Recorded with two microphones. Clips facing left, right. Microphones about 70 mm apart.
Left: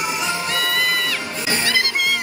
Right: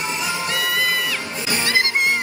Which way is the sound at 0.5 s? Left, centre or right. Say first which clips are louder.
Even; centre.